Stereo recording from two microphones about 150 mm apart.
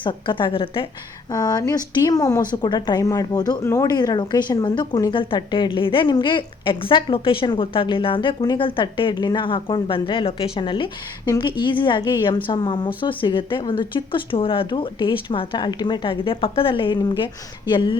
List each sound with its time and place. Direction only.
0.0 s a woman's voice: 35° left (ahead or behind)
1.3 s a woman's voice: 25° left (ahead or behind)